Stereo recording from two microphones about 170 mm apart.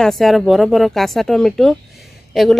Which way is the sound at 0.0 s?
Centre (ahead or behind).